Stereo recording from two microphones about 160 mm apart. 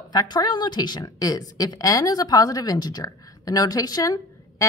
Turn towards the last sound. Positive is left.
turn(degrees=25)  # may be behind; listen again after turning